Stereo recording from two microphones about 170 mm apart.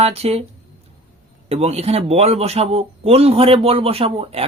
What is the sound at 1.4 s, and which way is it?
Speech, 35° right (ahead or behind).